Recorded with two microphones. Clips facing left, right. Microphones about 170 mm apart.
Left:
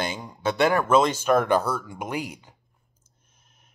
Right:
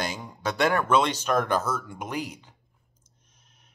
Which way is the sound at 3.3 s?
50° left (ahead or behind).